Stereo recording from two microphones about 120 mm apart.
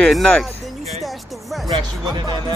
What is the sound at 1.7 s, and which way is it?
Speech, 35° right (ahead or behind).